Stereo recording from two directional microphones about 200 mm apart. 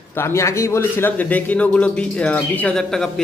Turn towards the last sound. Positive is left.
turn(degrees=5)  # may be behind; listen again after turning